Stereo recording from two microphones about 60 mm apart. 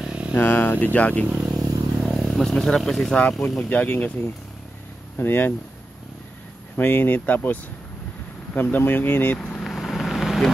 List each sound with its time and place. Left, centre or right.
0.0 s a sound: centre
0.4 s speech: left
1.2 s speech: right
1.6 s vehicle: centre
3.6 s speech: left
6.8 s speech: left
8.6 s speech: left
9.6 s vehicle: centre